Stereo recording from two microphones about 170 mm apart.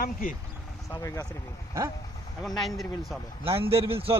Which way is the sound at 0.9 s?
20° left (ahead or behind).